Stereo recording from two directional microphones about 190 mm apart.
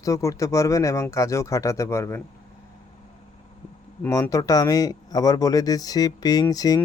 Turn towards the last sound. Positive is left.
turn(degrees=20)  # may be behind; listen again after turning